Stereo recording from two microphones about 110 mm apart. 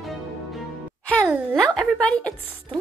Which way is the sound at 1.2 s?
15° right (ahead or behind).